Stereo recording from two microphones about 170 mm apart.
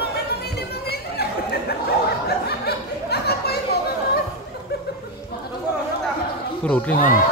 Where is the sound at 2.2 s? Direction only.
70° left (ahead or behind).